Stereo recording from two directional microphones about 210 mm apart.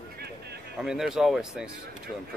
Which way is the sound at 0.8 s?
5° right (ahead or behind).